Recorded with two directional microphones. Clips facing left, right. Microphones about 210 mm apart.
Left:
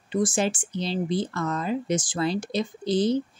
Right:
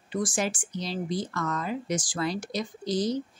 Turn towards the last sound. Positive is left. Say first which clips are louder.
# left 5 dB
turn(degrees=30)  # may be behind; listen again after turning